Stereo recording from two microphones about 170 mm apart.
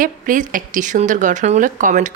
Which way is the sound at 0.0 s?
50° right (ahead or behind).